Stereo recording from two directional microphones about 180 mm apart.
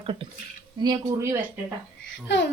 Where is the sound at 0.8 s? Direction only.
20° right (ahead or behind).